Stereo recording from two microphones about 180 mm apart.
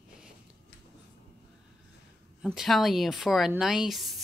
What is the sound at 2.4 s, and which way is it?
Speech, centre (ahead or behind).